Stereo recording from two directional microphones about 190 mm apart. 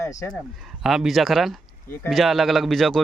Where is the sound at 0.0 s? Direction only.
20° left (ahead or behind).